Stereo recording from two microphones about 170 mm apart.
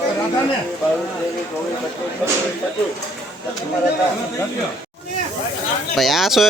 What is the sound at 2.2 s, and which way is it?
Speech, 5° right (ahead or behind).